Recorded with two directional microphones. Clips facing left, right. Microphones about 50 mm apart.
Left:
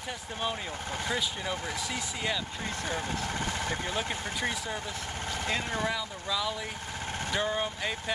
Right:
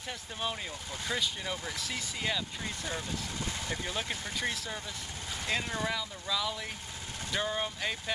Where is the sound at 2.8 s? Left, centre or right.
Left.